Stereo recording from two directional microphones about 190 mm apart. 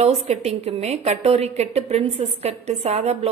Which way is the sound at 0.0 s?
35° right (ahead or behind).